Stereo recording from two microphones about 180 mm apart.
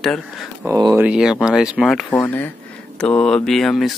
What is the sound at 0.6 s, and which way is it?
Speech, 15° right (ahead or behind).